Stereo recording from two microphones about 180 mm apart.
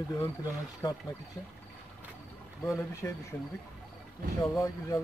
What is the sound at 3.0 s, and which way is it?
Speech, 20° left (ahead or behind).